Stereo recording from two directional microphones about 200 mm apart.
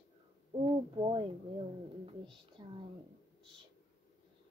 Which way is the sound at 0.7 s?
25° right (ahead or behind).